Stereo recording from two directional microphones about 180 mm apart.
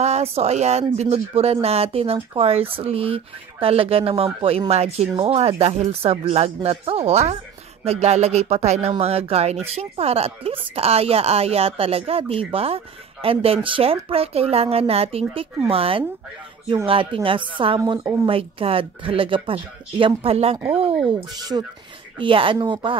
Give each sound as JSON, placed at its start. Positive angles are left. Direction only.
{"t": 0.0, "sound": "a woman's voice", "side_deg": -35}